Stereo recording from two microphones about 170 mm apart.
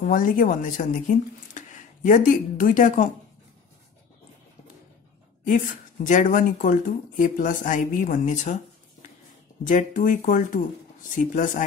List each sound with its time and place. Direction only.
0.0 s speech: 50° left (ahead or behind)
6.0 s speech: 50° left (ahead or behind)
9.7 s speech: 50° left (ahead or behind)